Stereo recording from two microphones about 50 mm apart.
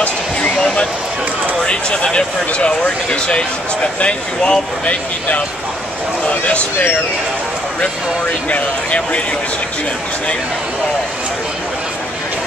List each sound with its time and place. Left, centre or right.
0.6 s a sound: centre
2.0 s speech: centre
8.5 s speech: left